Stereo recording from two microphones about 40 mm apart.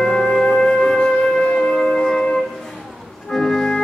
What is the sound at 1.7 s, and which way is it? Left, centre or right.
Wind instrument, centre.